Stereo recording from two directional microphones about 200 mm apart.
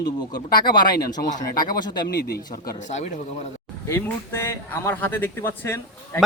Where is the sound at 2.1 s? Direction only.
50° left (ahead or behind); by 3.4 s 35° left (ahead or behind).